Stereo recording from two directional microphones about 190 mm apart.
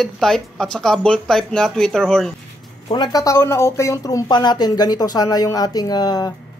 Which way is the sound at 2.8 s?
25° left (ahead or behind).